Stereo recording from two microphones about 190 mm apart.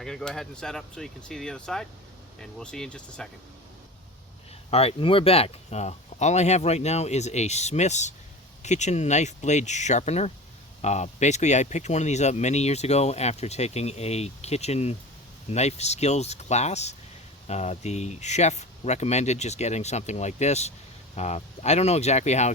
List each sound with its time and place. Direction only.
0.0 s speech: centre (ahead or behind)
4.7 s speech: 30° left (ahead or behind)